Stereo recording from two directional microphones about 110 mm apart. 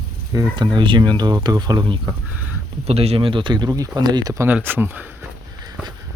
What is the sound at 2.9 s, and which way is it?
Speech, 65° right (ahead or behind).